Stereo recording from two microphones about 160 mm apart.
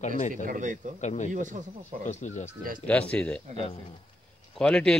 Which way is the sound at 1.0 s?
50° left (ahead or behind).